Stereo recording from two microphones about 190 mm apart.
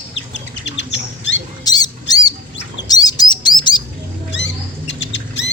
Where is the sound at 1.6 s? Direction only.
20° left (ahead or behind).